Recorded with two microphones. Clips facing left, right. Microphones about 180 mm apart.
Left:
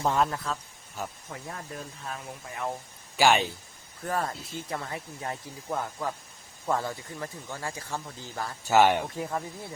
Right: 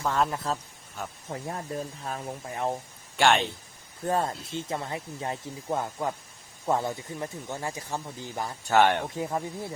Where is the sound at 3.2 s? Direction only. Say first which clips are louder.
Even; 5° left (ahead or behind).